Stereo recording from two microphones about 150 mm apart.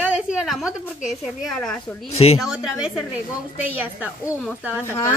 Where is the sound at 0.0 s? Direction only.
5° right (ahead or behind).